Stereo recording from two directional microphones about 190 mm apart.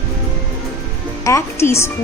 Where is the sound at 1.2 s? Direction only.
15° left (ahead or behind).